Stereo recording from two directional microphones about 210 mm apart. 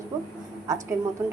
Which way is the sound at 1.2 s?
10° right (ahead or behind).